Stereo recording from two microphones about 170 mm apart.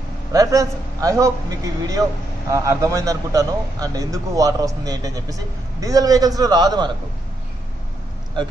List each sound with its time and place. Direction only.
0.3 s a man's voice: 20° right (ahead or behind)